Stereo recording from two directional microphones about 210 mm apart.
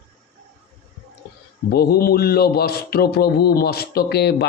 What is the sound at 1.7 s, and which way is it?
A man's voice, 50° left (ahead or behind).